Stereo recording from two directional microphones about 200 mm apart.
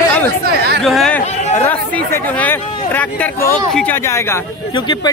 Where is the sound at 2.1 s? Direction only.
10° left (ahead or behind).